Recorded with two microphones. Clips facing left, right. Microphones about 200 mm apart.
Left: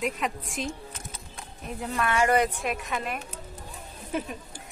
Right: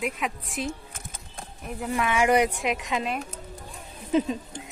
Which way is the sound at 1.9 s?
15° right (ahead or behind).